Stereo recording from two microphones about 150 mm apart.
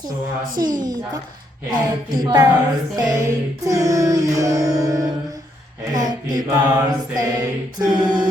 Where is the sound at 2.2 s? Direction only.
25° right (ahead or behind).